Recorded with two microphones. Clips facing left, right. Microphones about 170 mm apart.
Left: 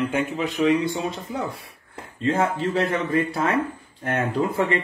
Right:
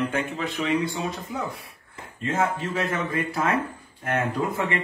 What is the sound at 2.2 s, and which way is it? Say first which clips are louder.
Speech: left 3 dB; 30° left (ahead or behind).